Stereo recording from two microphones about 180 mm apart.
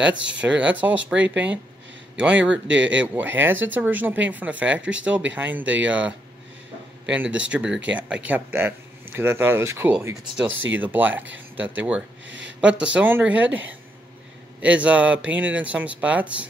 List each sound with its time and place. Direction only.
0.4 s speech: 5° right (ahead or behind)
12.3 s a sound: 90° right
12.5 s speech: 5° right (ahead or behind)